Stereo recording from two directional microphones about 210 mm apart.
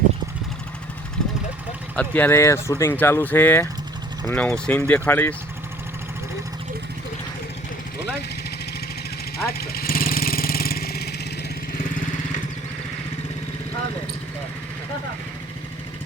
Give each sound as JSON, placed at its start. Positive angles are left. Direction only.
{"t": 2.0, "sound": "speech", "side_deg": 10}
{"t": 9.5, "sound": "vehicle", "side_deg": 45}